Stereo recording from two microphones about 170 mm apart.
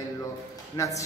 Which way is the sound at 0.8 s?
20° left (ahead or behind).